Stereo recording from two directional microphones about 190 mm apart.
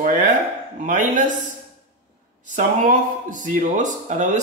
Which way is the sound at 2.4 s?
40° right (ahead or behind).